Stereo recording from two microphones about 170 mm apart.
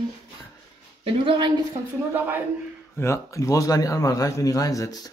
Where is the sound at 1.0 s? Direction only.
30° right (ahead or behind).